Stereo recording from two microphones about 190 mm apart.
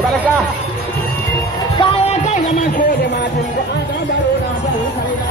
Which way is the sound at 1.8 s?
30° left (ahead or behind).